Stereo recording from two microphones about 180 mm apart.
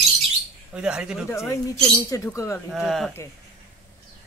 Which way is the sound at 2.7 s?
Centre (ahead or behind).